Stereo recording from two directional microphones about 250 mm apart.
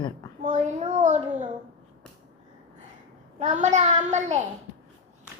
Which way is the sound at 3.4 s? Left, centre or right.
Right.